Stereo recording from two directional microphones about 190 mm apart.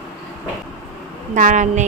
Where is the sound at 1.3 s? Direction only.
45° right (ahead or behind).